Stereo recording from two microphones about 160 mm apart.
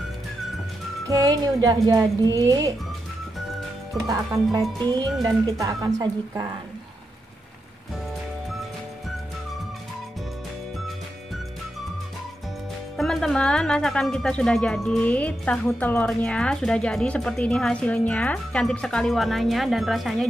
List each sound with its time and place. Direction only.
1.0 s speech: 20° right (ahead or behind)
4.1 s speech: 25° right (ahead or behind)
12.9 s speech: centre (ahead or behind)